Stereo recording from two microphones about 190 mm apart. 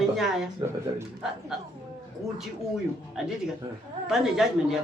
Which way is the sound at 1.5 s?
Centre (ahead or behind).